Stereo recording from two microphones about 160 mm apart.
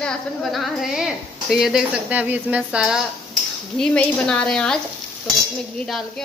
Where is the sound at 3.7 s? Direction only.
5° left (ahead or behind).